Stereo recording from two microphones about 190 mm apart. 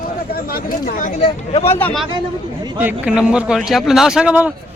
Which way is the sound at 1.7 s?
10° left (ahead or behind).